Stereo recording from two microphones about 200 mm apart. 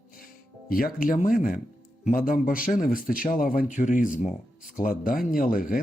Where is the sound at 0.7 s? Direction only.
45° left (ahead or behind).